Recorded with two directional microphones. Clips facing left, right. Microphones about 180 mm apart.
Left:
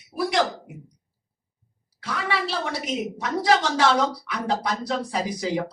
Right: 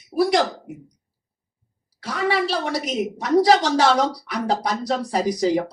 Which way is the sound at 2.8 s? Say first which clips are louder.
Right 3 dB; 35° right (ahead or behind).